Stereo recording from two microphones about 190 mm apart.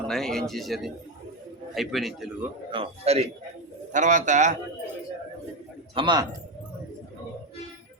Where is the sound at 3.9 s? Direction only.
40° right (ahead or behind).